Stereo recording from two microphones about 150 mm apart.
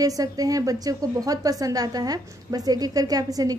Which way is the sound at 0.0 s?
25° right (ahead or behind).